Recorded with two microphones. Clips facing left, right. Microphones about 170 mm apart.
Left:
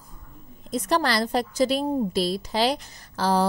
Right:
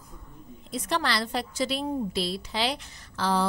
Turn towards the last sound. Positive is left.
turn(degrees=40)  # may be behind; listen again after turning